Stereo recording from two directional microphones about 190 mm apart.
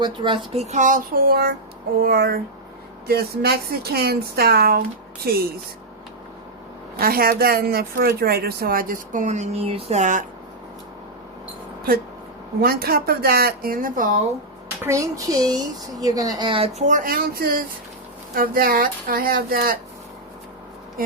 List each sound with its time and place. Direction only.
0.0 s a woman's voice: 25° right (ahead or behind); by 5.4 s 55° right (ahead or behind)
6.9 s a woman's voice: 50° right (ahead or behind)
12.6 s a woman's voice: 55° right (ahead or behind)
14.8 s a woman's voice: 15° right (ahead or behind); by 19.8 s 50° right (ahead or behind)